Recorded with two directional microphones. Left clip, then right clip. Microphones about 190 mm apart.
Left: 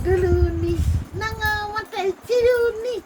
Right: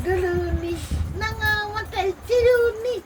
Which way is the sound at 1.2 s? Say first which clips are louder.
Even; 40° left (ahead or behind).